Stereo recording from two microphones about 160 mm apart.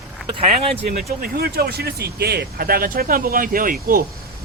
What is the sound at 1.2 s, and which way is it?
Speech, 75° right (ahead or behind).